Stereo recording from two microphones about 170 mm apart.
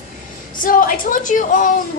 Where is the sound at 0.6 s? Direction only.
55° left (ahead or behind).